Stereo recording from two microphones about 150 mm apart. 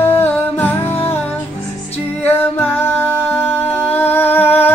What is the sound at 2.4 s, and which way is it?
Music, 15° left (ahead or behind).